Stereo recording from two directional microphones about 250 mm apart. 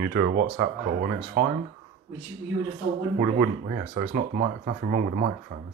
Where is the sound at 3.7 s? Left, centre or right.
Right.